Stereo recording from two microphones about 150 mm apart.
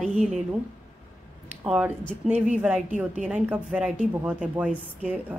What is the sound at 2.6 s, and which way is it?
Speech, 10° right (ahead or behind).